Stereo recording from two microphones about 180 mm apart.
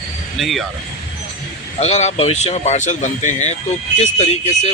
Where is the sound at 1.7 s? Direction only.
40° left (ahead or behind).